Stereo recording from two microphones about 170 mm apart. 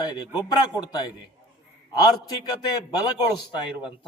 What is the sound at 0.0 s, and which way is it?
A man's voice, 25° left (ahead or behind).